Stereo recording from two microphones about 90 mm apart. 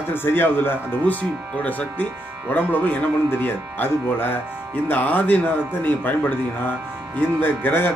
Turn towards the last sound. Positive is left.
turn(degrees=20)  # may be behind; listen again after turning